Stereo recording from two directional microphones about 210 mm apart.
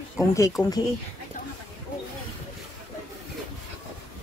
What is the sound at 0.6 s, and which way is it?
Speech, 5° left (ahead or behind).